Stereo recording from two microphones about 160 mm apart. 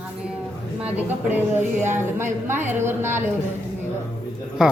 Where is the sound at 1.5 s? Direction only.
15° right (ahead or behind).